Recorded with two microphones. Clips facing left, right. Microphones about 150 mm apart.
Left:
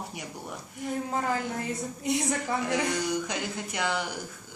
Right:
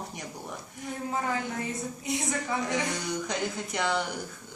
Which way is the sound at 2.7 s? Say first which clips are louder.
Left 3 dB; 5° left (ahead or behind).